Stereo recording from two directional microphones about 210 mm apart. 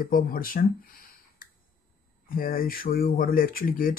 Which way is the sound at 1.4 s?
45° left (ahead or behind).